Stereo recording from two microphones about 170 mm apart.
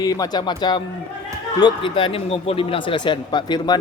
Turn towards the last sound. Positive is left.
turn(degrees=25)  # may be behind; listen again after turning